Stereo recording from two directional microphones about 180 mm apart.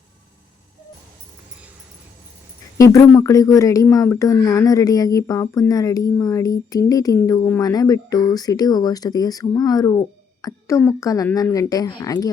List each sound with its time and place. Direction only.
2.7 s speech: 15° left (ahead or behind)